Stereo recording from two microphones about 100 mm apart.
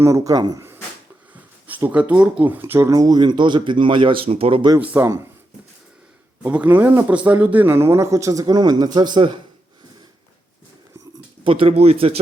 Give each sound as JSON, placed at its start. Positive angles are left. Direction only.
{"t": 0.0, "sound": "speech", "side_deg": -30}
{"t": 1.9, "sound": "speech", "side_deg": -15}
{"t": 4.8, "sound": "speech", "side_deg": -15}
{"t": 6.4, "sound": "a man's voice", "side_deg": -15}
{"t": 11.4, "sound": "a man's voice", "side_deg": -65}